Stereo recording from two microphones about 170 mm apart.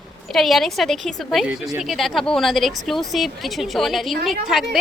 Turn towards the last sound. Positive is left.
turn(degrees=0)  # may be behind; listen again after turning